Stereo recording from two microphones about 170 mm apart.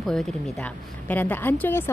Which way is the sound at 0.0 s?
Centre (ahead or behind).